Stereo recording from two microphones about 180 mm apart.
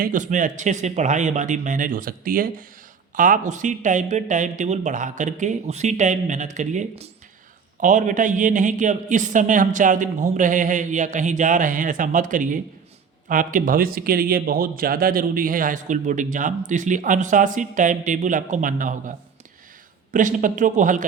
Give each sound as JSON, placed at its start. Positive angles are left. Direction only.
{"t": 0.0, "sound": "a man's voice", "side_deg": -45}